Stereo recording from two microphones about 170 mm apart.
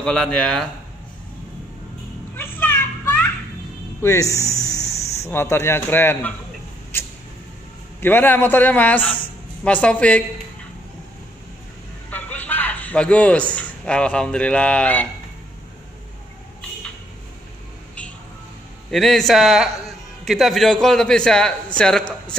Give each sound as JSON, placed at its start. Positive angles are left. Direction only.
{"t": 0.0, "sound": "a man's voice", "side_deg": 5}
{"t": 2.3, "sound": "children playing", "side_deg": 10}
{"t": 4.0, "sound": "speech", "side_deg": 20}
{"t": 4.6, "sound": "a sound", "side_deg": 20}
{"t": 5.2, "sound": "a man's voice", "side_deg": 15}
{"t": 8.0, "sound": "a man's voice", "side_deg": 10}
{"t": 12.1, "sound": "a man's voice", "side_deg": 10}
{"t": 18.9, "sound": "a man's voice", "side_deg": 0}